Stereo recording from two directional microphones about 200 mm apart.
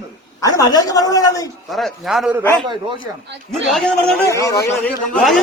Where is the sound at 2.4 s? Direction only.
10° left (ahead or behind).